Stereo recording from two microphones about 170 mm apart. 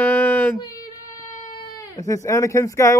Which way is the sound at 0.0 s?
10° left (ahead or behind).